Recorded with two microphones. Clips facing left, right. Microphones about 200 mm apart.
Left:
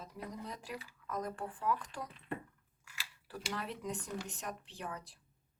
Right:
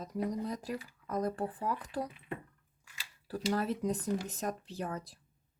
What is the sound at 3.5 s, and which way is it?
A woman's voice, 40° right (ahead or behind).